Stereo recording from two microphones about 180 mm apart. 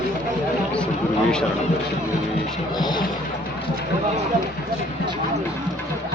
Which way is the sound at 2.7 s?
25° left (ahead or behind).